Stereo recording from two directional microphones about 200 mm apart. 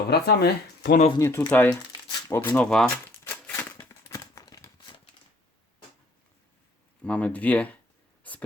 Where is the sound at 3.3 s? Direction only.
10° left (ahead or behind).